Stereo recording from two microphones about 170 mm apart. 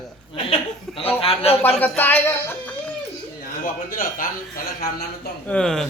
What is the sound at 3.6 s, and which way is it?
Speech, 55° left (ahead or behind).